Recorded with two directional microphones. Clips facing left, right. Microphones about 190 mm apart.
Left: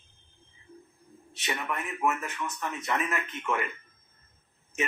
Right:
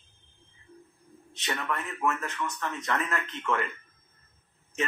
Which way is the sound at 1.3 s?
15° left (ahead or behind).